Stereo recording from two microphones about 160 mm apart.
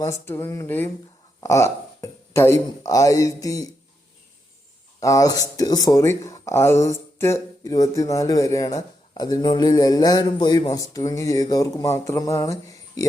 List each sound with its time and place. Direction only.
0.0 s speech: 15° left (ahead or behind)
4.9 s speech: 20° left (ahead or behind)